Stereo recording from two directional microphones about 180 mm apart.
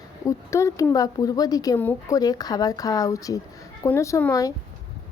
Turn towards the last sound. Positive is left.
turn(degrees=15)  # may be behind; listen again after turning